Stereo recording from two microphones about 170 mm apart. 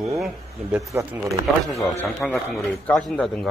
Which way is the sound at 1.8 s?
20° left (ahead or behind).